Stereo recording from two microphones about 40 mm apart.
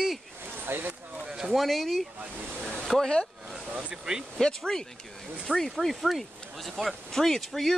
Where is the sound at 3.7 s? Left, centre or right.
Right.